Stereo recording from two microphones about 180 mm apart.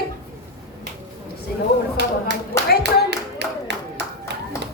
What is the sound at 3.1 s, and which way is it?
Clapping, 70° right (ahead or behind).